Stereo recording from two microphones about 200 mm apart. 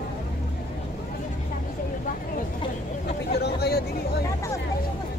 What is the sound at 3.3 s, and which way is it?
Vehicle, 55° left (ahead or behind).